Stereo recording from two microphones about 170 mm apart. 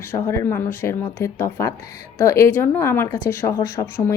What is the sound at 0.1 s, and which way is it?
Speech, 15° left (ahead or behind).